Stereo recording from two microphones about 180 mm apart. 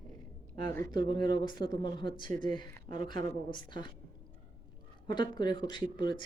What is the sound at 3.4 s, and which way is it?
Speech, 25° left (ahead or behind).